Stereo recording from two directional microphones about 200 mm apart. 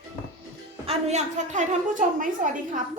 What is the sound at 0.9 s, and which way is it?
A woman's voice, 35° right (ahead or behind).